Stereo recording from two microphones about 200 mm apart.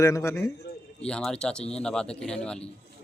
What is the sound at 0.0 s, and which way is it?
A man's voice, 15° left (ahead or behind).